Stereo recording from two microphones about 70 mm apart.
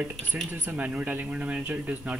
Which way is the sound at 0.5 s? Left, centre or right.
Right.